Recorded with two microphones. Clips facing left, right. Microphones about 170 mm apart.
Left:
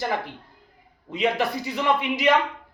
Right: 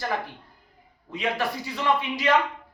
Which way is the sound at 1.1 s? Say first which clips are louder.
Left 4 dB; 20° left (ahead or behind).